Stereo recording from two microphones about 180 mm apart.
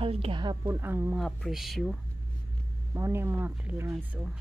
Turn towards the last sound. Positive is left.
turn(degrees=-10)  # may be behind; listen again after turning